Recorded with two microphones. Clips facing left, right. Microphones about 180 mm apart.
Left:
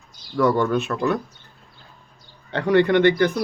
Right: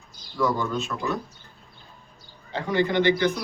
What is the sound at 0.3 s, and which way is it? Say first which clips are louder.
Speech: left 6 dB; 65° left (ahead or behind).